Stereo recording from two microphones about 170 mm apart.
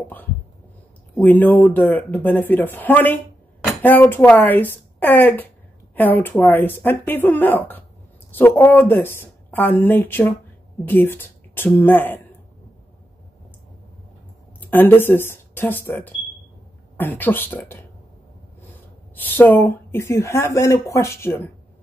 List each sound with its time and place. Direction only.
1.1 s a woman's voice: 10° left (ahead or behind)
14.6 s a woman's voice: 10° left (ahead or behind)
19.1 s a woman's voice: 10° left (ahead or behind)